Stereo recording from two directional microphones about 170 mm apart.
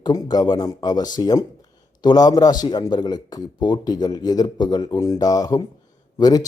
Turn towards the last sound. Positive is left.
turn(degrees=20)  # may be behind; listen again after turning